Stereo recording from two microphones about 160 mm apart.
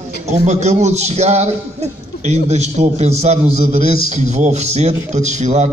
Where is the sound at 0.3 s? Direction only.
45° right (ahead or behind).